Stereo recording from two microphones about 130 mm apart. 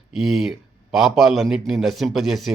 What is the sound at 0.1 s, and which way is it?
A man's voice, 5° right (ahead or behind).